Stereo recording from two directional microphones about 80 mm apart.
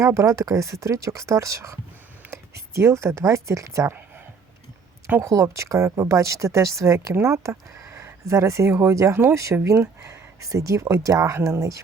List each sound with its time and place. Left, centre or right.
0.0 s speech: right
5.2 s speech: right